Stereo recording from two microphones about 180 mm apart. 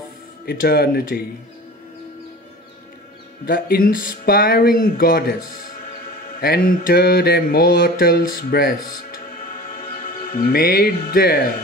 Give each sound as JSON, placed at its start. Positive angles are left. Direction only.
{"t": 0.5, "sound": "speech", "side_deg": 60}
{"t": 3.4, "sound": "speech", "side_deg": 50}
{"t": 6.0, "sound": "mantra", "side_deg": 55}
{"t": 8.0, "sound": "speech", "side_deg": 55}